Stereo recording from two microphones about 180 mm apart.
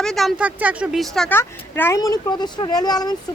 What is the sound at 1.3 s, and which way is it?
Speech, 15° left (ahead or behind).